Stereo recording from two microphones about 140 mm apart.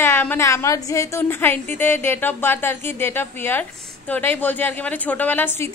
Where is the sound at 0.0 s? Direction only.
15° left (ahead or behind).